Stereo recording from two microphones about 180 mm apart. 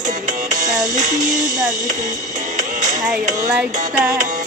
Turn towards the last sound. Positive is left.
turn(degrees=-45)  # may be behind; listen again after turning